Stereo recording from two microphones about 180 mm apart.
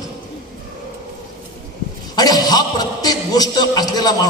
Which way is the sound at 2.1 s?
20° left (ahead or behind).